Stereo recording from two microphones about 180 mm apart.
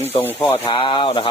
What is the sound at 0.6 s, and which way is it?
Speech, 30° left (ahead or behind).